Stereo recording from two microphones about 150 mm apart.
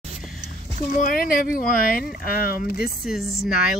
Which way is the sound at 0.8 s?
65° left (ahead or behind).